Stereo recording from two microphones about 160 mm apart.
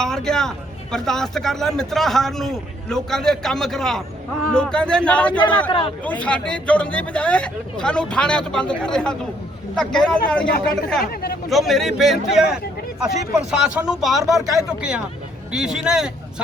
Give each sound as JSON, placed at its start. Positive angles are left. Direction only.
{"t": 0.0, "sound": "speech", "side_deg": 5}
{"t": 5.4, "sound": "speech", "side_deg": 30}
{"t": 6.1, "sound": "speech", "side_deg": 10}
{"t": 11.0, "sound": "speech", "side_deg": 70}
{"t": 11.4, "sound": "speech", "side_deg": 0}